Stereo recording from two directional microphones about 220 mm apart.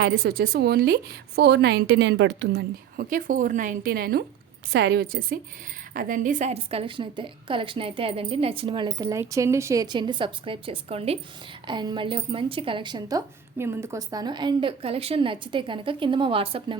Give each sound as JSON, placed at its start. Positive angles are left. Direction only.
{"t": 0.0, "sound": "a woman's voice", "side_deg": -50}